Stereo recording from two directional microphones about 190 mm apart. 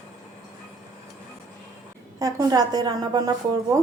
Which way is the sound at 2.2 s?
20° right (ahead or behind).